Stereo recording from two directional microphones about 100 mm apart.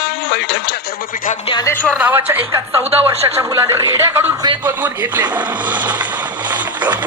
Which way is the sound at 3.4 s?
30° right (ahead or behind).